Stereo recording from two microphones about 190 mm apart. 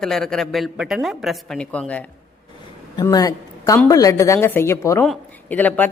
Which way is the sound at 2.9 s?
20° left (ahead or behind).